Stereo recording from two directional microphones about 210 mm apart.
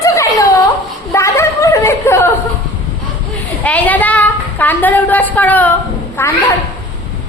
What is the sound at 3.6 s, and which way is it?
A woman's voice, 5° left (ahead or behind).